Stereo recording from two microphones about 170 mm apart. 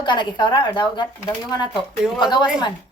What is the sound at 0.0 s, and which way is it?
A woman's voice, 25° left (ahead or behind).